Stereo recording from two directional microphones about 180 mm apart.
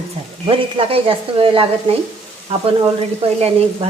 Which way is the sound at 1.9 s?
30° right (ahead or behind).